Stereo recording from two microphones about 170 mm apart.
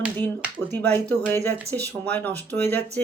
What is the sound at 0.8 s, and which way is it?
Speech, 10° left (ahead or behind).